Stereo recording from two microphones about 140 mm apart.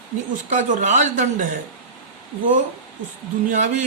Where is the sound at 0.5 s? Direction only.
60° right (ahead or behind).